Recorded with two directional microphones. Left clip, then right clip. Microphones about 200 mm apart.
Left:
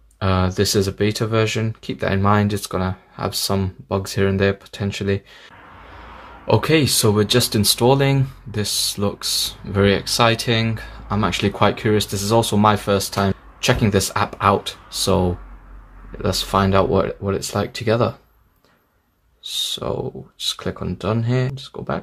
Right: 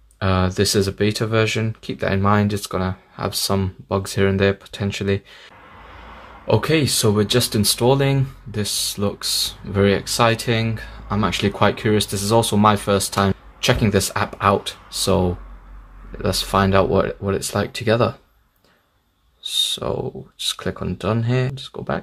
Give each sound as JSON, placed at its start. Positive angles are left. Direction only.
{"t": 0.2, "sound": "speech", "side_deg": 0}
{"t": 19.4, "sound": "speech", "side_deg": -5}